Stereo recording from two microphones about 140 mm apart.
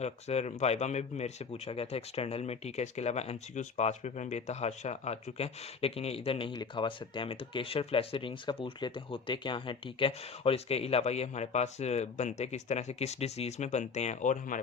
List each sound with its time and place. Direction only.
0.0 s speech: 50° left (ahead or behind)
6.5 s speech: 35° left (ahead or behind); by 14.6 s 65° left (ahead or behind)